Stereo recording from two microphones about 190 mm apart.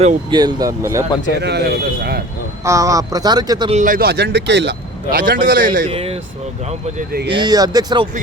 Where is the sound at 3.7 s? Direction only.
45° right (ahead or behind); by 5.2 s 65° right (ahead or behind).